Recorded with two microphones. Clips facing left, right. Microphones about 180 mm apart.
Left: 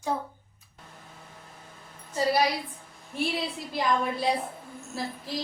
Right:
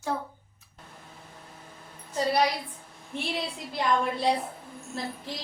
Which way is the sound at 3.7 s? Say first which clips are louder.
Right 1 dB; centre (ahead or behind).